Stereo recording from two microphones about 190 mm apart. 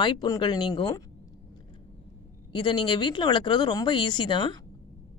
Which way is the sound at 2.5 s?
25° left (ahead or behind).